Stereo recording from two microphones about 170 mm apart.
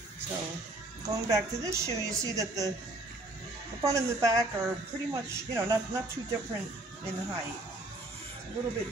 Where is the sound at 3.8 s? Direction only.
20° right (ahead or behind).